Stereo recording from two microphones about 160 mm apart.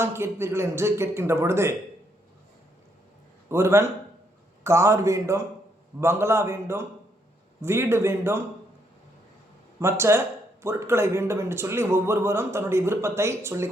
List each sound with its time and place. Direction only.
0.0 s speech: 15° right (ahead or behind)
3.5 s speech: 15° right (ahead or behind)
9.8 s speech: 15° right (ahead or behind)